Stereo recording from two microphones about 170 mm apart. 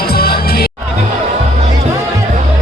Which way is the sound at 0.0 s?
65° left (ahead or behind).